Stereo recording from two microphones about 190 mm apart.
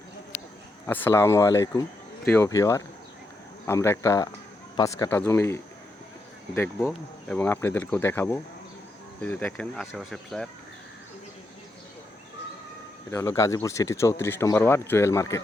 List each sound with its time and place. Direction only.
0.9 s speech: 10° left (ahead or behind)
13.1 s speech: 15° left (ahead or behind)